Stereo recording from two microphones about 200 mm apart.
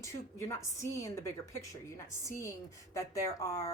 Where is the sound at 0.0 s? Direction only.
15° left (ahead or behind).